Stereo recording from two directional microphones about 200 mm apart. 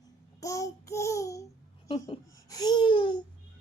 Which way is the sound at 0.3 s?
15° left (ahead or behind).